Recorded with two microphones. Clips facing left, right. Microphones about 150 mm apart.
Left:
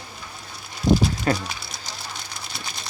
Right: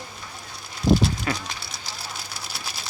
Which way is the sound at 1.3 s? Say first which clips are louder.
Left 6 dB; 40° left (ahead or behind).